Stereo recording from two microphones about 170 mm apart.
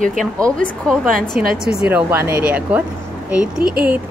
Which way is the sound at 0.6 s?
5° left (ahead or behind).